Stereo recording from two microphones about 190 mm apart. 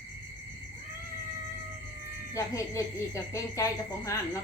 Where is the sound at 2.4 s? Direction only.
15° left (ahead or behind).